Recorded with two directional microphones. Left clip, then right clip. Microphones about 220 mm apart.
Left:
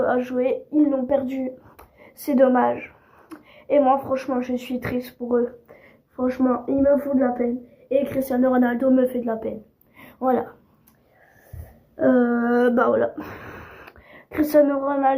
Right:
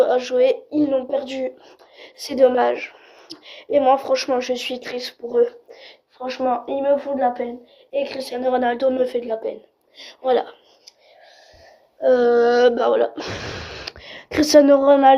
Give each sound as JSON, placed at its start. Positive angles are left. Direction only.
{"t": 0.1, "sound": "a woman's voice", "side_deg": -55}
{"t": 12.0, "sound": "speech", "side_deg": -55}